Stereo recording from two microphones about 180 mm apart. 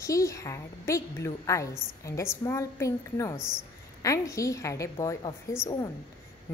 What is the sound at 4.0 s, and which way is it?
A woman's voice, 20° left (ahead or behind).